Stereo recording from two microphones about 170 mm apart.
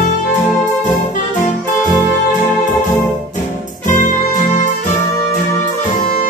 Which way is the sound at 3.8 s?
50° left (ahead or behind).